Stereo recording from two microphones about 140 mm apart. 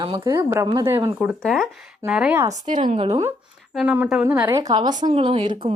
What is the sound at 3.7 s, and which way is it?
Speech, 5° right (ahead or behind).